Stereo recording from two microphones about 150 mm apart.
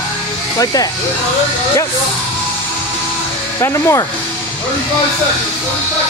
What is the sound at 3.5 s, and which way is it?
Speech, 20° left (ahead or behind).